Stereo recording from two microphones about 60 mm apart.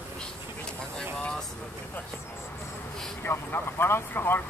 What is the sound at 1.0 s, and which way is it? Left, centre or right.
Vehicle, centre.